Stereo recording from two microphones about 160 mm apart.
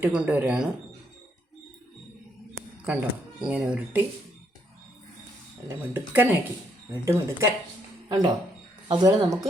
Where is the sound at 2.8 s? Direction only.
5° right (ahead or behind).